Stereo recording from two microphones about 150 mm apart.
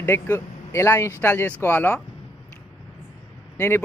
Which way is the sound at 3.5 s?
15° left (ahead or behind).